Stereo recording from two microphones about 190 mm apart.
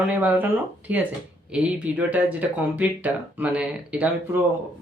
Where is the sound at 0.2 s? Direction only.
10° right (ahead or behind).